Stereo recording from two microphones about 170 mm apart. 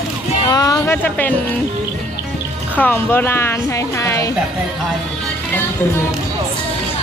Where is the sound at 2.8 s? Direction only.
10° left (ahead or behind).